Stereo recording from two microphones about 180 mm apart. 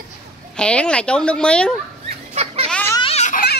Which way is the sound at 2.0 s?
35° right (ahead or behind).